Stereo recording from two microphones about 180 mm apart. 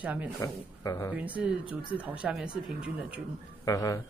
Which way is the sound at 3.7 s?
20° left (ahead or behind).